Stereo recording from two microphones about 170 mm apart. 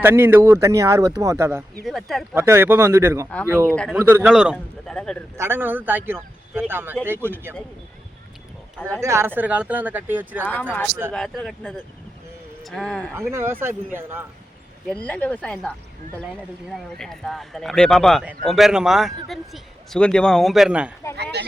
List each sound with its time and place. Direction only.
0.0 s speech: 10° right (ahead or behind)
1.8 s a man's voice: centre (ahead or behind)
2.3 s speech: 15° right (ahead or behind)
4.5 s speech: 5° left (ahead or behind)
5.4 s speech: 15° right (ahead or behind)
9.0 s speech: 15° right (ahead or behind)
10.4 s a man's voice: 10° left (ahead or behind)
13.1 s speech: 15° right (ahead or behind)
14.8 s a man's voice: 5° left (ahead or behind)